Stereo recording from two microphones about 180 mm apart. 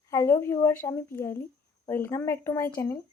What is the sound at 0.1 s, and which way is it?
Speech, 15° left (ahead or behind).